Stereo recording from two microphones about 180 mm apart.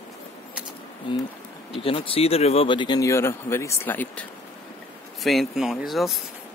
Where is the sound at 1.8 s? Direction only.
30° left (ahead or behind); by 4.2 s 10° left (ahead or behind).